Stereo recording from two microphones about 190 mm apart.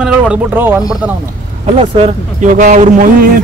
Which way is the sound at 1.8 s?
30° right (ahead or behind).